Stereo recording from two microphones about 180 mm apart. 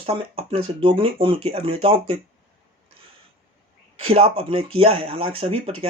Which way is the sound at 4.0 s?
30° right (ahead or behind).